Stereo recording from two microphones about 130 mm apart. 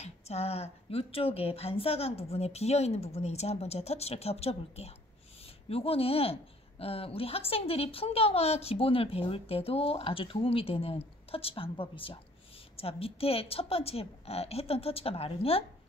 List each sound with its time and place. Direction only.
0.0 s speech: 55° left (ahead or behind)